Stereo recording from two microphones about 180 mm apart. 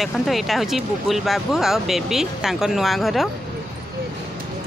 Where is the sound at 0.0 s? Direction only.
Centre (ahead or behind).